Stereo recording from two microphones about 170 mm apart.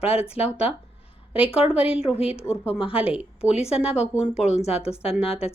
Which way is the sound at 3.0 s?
5° right (ahead or behind).